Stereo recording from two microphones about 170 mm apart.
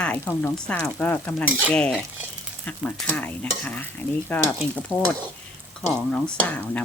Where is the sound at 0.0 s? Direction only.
10° left (ahead or behind).